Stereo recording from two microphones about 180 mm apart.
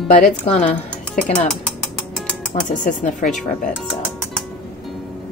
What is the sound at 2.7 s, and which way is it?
Speech, 45° left (ahead or behind).